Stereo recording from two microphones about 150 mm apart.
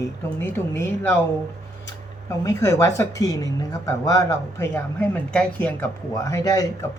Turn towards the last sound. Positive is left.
turn(degrees=25)  # may be behind; listen again after turning